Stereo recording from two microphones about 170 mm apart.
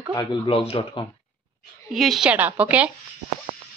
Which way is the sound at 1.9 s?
Centre (ahead or behind).